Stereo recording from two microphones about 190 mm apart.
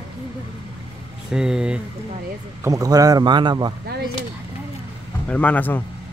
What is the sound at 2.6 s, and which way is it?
Speech, 20° right (ahead or behind).